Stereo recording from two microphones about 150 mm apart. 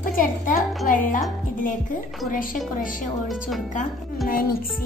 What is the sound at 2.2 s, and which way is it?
Speech, 65° left (ahead or behind).